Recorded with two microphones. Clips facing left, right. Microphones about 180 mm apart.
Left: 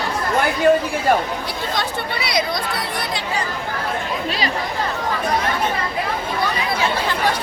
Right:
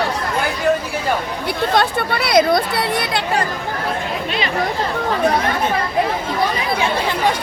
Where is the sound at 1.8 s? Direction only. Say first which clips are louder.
Right 7 dB; 60° right (ahead or behind).